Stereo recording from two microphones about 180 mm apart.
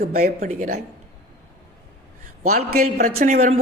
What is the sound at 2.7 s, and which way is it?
Speech, 55° right (ahead or behind).